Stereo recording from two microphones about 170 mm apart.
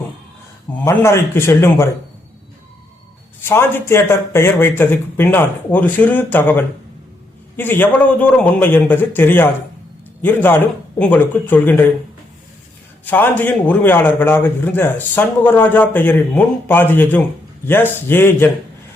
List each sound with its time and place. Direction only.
0.9 s a man's voice: 15° left (ahead or behind)
3.4 s a man's voice: 15° left (ahead or behind)
13.1 s a man's voice: 10° left (ahead or behind)